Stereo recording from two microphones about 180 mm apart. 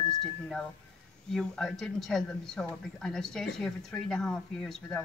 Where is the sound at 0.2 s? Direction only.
5° left (ahead or behind).